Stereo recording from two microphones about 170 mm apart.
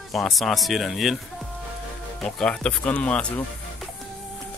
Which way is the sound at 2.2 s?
5° left (ahead or behind).